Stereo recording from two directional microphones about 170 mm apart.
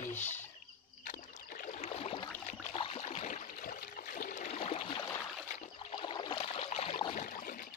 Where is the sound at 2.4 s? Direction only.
35° left (ahead or behind); by 7.6 s 55° left (ahead or behind).